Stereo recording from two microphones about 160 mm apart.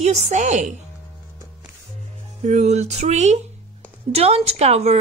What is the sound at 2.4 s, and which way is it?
Speech, 45° right (ahead or behind).